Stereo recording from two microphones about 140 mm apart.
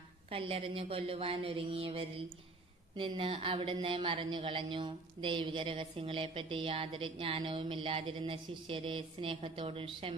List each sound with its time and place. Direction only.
0.3 s speech: 45° right (ahead or behind)